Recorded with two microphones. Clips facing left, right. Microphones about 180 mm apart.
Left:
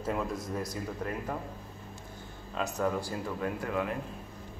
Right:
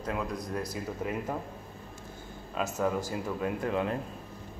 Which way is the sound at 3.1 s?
20° right (ahead or behind).